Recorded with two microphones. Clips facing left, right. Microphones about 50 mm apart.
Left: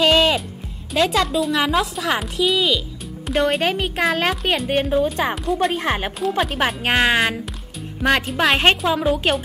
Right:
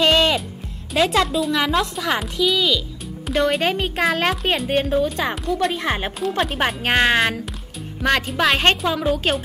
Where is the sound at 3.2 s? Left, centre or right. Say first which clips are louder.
Even; centre.